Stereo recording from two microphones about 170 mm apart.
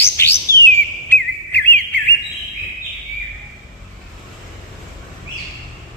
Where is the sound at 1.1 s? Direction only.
10° left (ahead or behind).